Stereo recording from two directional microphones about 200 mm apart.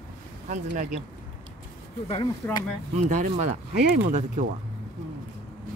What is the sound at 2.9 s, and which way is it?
Speech, 35° right (ahead or behind).